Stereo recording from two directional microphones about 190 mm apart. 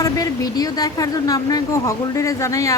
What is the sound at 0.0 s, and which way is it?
Speech, 20° left (ahead or behind).